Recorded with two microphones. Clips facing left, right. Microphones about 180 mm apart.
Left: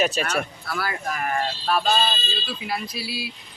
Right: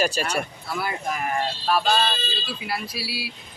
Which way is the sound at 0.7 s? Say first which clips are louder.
Right 1 dB; 20° right (ahead or behind).